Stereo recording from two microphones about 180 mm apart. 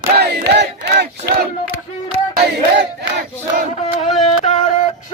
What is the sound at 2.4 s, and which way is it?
Battle cry, 70° right (ahead or behind).